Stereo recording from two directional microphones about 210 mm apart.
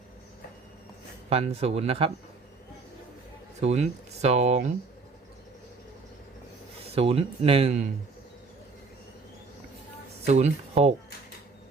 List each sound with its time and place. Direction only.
1.3 s speech: 30° right (ahead or behind)
3.6 s speech: 30° right (ahead or behind)
6.8 s speech: 30° right (ahead or behind)
10.2 s speech: 30° right (ahead or behind)